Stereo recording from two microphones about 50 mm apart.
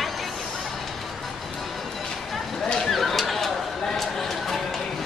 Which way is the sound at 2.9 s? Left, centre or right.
Centre.